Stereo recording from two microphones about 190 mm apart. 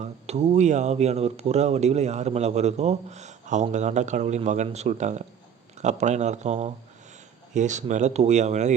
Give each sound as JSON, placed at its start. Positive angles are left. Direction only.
{"t": 0.0, "sound": "speech", "side_deg": -35}